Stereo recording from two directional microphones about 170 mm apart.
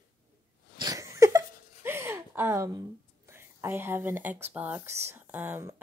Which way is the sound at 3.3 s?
15° right (ahead or behind).